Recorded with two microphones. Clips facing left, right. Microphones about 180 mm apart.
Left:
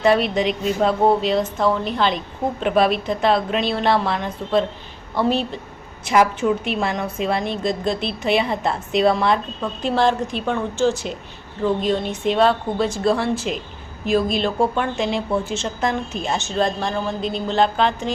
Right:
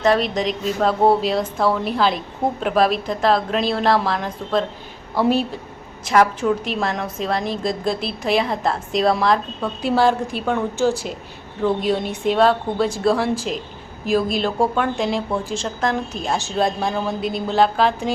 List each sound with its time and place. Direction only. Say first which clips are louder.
0.0 s a woman's voice: left 1 dB; 5° left (ahead or behind)
6.1 s a woman's voice: even; 5° left (ahead or behind)